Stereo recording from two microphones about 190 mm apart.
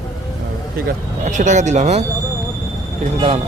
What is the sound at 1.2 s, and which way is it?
Speech, 40° right (ahead or behind).